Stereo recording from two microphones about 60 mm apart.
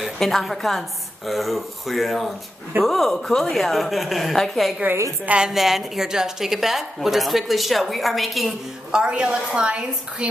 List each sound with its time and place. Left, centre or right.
0.0 s a woman's voice: centre
8.9 s a woman's voice: centre